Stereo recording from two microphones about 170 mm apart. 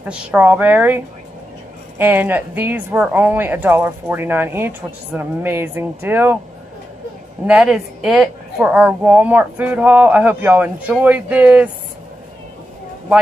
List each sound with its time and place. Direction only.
0.1 s a woman's voice: 10° right (ahead or behind)
7.4 s a woman's voice: 5° right (ahead or behind)